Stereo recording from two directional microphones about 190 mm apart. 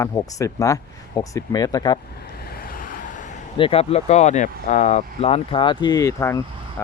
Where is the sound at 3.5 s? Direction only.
30° left (ahead or behind).